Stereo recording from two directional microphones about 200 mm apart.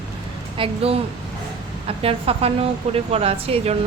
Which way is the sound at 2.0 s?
30° right (ahead or behind).